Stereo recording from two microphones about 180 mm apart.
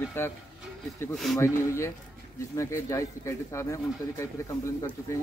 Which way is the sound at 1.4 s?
15° left (ahead or behind).